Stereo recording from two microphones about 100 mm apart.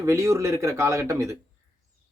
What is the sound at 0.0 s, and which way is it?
Speech, 30° right (ahead or behind).